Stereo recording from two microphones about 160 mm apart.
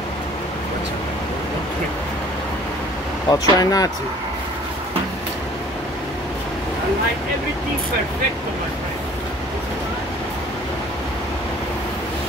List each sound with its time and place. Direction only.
3.3 s speech: 25° left (ahead or behind)